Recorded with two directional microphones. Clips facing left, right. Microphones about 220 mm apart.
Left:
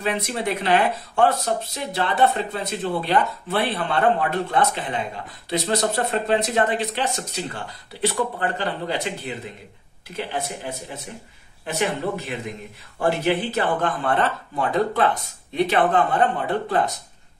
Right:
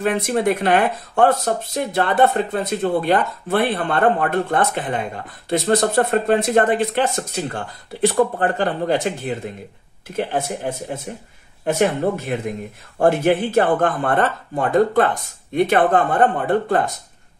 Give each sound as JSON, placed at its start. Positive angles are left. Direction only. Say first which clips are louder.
{"t": 0.0, "sound": "speech", "louder": "right 6 dB", "side_deg": -50}